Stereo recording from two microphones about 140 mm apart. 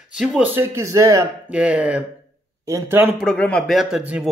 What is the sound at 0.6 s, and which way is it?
Speech, 20° right (ahead or behind).